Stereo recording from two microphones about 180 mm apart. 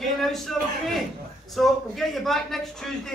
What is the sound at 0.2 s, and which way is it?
A man's voice, centre (ahead or behind).